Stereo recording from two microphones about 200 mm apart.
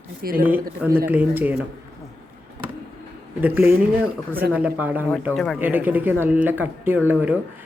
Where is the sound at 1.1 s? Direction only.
10° right (ahead or behind).